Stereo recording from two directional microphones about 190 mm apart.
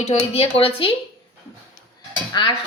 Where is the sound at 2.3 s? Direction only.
20° left (ahead or behind).